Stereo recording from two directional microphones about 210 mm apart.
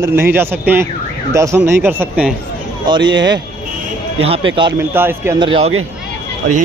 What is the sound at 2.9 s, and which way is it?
Speech, 20° right (ahead or behind).